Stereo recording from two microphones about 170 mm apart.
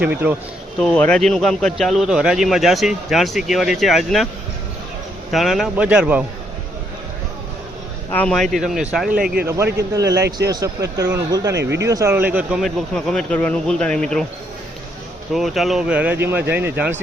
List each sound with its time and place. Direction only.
0.0 s speech: 10° right (ahead or behind)
0.8 s a man's voice: 5° left (ahead or behind)
5.3 s a man's voice: centre (ahead or behind)
8.1 s a man's voice: 5° left (ahead or behind)
9.9 s speech: 20° right (ahead or behind)
11.5 s speech: 90° right
11.9 s a man's voice: 15° right (ahead or behind); by 14.3 s 5° left (ahead or behind)
15.3 s speech: centre (ahead or behind)